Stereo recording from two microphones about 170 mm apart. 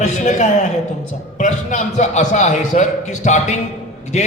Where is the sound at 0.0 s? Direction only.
45° left (ahead or behind).